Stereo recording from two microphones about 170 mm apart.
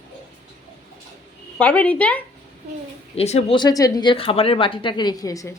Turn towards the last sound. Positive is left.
turn(degrees=20)  # may be behind; listen again after turning